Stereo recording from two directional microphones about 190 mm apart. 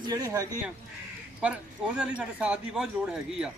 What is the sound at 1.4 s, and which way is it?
Speech, 5° right (ahead or behind).